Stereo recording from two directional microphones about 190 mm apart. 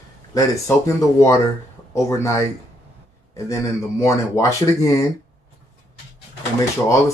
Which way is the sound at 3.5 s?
15° left (ahead or behind).